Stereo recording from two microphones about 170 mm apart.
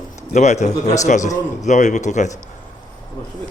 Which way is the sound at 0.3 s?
40° left (ahead or behind).